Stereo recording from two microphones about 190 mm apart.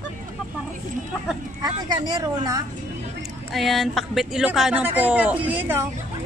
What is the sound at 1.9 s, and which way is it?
Speech, 20° right (ahead or behind).